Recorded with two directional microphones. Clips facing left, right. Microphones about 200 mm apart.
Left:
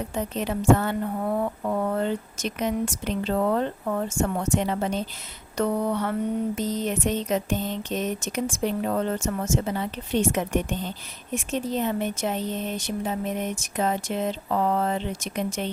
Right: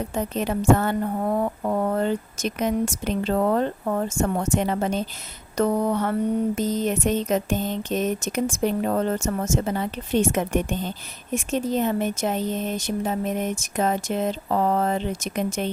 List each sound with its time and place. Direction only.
0.1 s speech: 45° right (ahead or behind)